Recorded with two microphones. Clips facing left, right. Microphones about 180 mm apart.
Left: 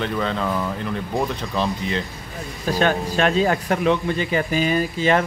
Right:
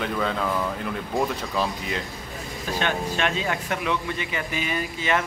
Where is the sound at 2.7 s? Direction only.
40° left (ahead or behind).